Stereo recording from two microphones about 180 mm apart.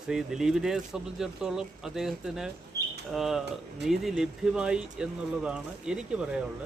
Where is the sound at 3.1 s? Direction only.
Centre (ahead or behind).